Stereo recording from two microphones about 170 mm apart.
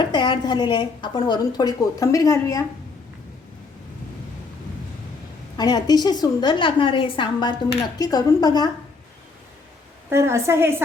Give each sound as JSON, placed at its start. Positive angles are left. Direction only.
{"t": 0.0, "sound": "a woman's voice", "side_deg": 25}
{"t": 5.5, "sound": "a woman's voice", "side_deg": 25}
{"t": 10.1, "sound": "a woman's voice", "side_deg": -15}